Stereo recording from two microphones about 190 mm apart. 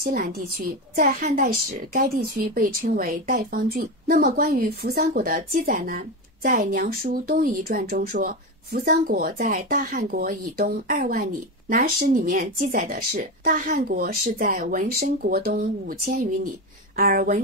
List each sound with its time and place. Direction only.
0.0 s a woman's voice: 50° right (ahead or behind)
16.9 s a woman's voice: 50° right (ahead or behind)